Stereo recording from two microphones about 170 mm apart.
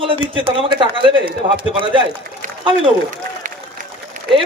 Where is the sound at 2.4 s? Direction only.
45° right (ahead or behind).